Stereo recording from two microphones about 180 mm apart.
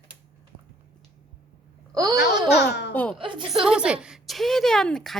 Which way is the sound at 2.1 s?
70° left (ahead or behind).